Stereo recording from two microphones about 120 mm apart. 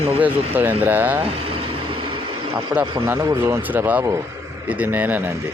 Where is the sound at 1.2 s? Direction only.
50° right (ahead or behind).